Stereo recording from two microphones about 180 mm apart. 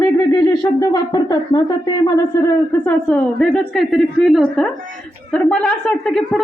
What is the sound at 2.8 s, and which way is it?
Speech, 10° left (ahead or behind).